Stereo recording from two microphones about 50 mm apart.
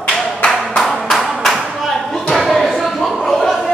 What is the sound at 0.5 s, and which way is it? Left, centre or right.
Clapping, centre.